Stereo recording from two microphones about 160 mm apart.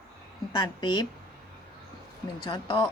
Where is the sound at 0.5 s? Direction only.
30° left (ahead or behind).